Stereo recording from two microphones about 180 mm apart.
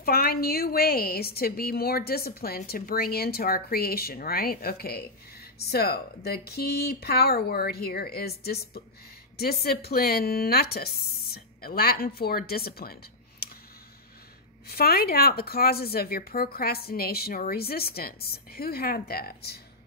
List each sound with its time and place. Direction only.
0.0 s a woman's voice: 55° left (ahead or behind)
14.7 s a woman's voice: 60° left (ahead or behind)